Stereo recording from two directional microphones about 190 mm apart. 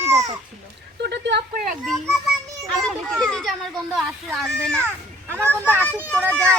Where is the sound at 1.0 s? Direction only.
60° right (ahead or behind).